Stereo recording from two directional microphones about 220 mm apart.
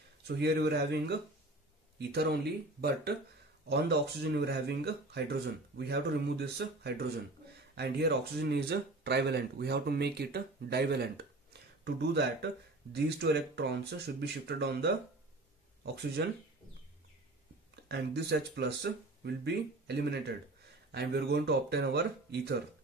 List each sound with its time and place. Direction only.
0.3 s speech: 50° right (ahead or behind)
17.8 s speech: 50° right (ahead or behind)